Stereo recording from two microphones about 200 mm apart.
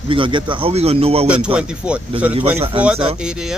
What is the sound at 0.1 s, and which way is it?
A man's voice, 25° right (ahead or behind).